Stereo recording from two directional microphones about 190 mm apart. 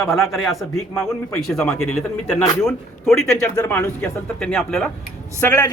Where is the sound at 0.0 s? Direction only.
Centre (ahead or behind).